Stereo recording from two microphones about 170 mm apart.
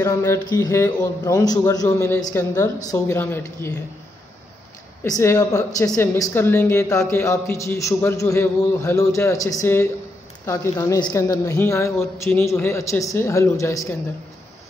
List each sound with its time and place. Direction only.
0.0 s a woman's voice: 15° left (ahead or behind)
5.0 s a woman's voice: 20° left (ahead or behind)